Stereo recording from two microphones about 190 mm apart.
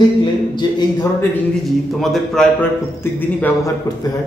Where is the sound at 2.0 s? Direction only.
Centre (ahead or behind); by 4.2 s 20° left (ahead or behind).